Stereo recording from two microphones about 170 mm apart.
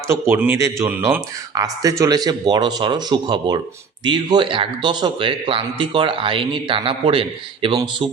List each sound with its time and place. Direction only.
0.1 s speech: 10° right (ahead or behind); by 8.1 s 30° right (ahead or behind)